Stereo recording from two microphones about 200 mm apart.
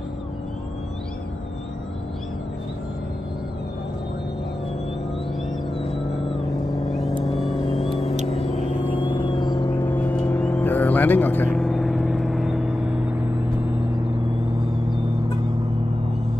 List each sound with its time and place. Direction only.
6.9 s vehicle: centre (ahead or behind)
7.9 s vehicle: 35° left (ahead or behind)
9.0 s music: 25° left (ahead or behind)
9.8 s vehicle: 10° left (ahead or behind)